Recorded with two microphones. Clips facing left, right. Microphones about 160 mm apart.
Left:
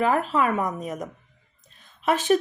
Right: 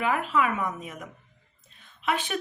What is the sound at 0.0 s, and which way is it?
Speech, 40° left (ahead or behind).